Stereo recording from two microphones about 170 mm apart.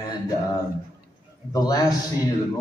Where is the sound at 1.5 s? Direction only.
25° left (ahead or behind).